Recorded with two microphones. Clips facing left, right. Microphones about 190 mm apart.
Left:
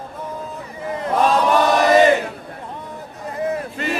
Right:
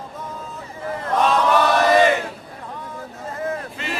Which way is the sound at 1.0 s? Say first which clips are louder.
Left 2 dB; 15° left (ahead or behind).